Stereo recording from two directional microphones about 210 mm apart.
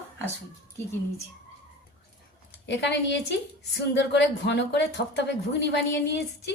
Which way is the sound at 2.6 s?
55° left (ahead or behind).